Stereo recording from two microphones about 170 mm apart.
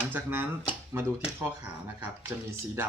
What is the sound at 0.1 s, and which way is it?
Speech, 10° right (ahead or behind).